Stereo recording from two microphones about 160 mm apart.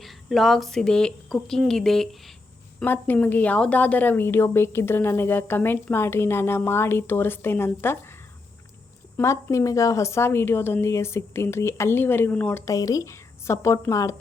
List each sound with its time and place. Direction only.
0.0 s a woman's voice: centre (ahead or behind); by 14.2 s 20° left (ahead or behind)